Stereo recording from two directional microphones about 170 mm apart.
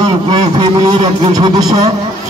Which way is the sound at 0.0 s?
30° right (ahead or behind).